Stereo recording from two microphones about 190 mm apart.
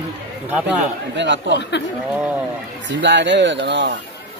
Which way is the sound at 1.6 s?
65° left (ahead or behind).